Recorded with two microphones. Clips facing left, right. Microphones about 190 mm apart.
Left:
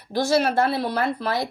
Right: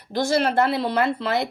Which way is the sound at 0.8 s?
25° right (ahead or behind).